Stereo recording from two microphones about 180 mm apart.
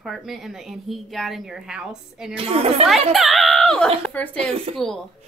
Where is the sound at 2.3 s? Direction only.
30° right (ahead or behind).